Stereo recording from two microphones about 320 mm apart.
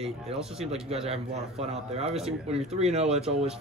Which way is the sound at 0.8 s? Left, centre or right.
Centre.